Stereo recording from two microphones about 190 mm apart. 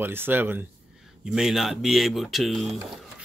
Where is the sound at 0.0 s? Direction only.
10° right (ahead or behind).